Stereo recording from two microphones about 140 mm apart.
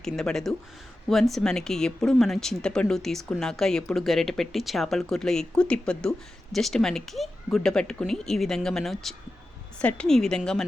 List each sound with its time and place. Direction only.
0.0 s speech: 5° left (ahead or behind)